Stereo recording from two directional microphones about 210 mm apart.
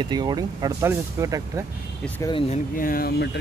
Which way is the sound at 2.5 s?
40° left (ahead or behind).